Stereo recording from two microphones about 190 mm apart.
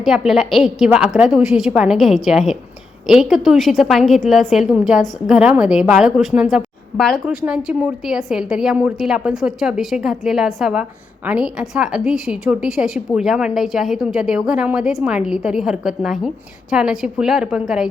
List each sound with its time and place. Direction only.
0.0 s a woman's voice: centre (ahead or behind)